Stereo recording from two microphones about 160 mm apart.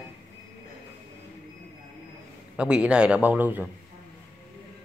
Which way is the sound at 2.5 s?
5° right (ahead or behind).